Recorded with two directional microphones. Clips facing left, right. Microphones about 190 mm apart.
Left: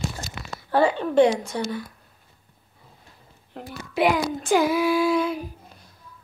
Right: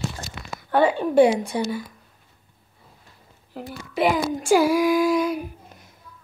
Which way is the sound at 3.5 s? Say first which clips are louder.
Even; 5° right (ahead or behind).